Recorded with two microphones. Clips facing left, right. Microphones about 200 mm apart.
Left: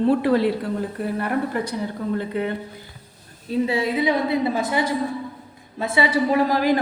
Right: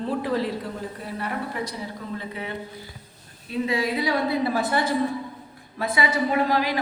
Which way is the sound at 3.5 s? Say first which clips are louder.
Left 3 dB; 30° left (ahead or behind).